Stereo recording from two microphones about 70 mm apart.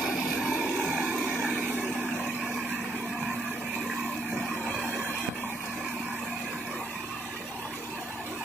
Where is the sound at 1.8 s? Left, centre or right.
Centre.